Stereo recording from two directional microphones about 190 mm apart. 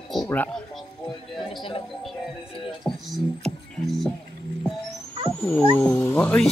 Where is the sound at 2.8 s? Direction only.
Centre (ahead or behind).